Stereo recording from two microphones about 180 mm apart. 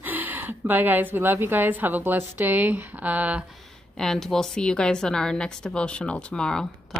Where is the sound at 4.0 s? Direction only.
Centre (ahead or behind).